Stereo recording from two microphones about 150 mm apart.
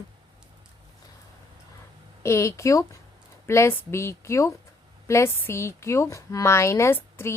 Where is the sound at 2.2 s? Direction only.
20° left (ahead or behind).